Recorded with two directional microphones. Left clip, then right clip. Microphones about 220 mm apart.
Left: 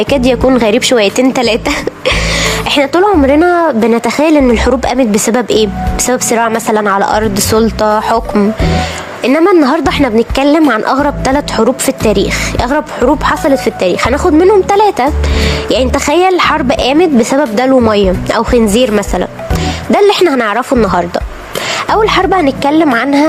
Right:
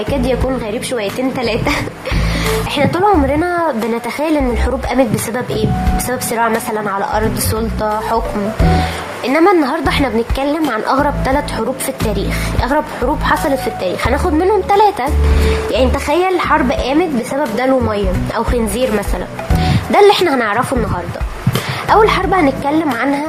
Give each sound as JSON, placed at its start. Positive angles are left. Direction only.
{"t": 0.1, "sound": "a woman's voice", "side_deg": 40}
{"t": 9.2, "sound": "a woman's voice", "side_deg": 30}